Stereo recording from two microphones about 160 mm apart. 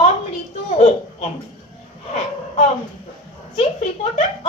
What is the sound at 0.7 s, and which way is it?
Speech, 45° left (ahead or behind).